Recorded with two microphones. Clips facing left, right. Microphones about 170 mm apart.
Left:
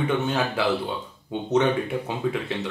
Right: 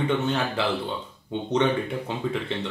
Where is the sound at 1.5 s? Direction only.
5° left (ahead or behind).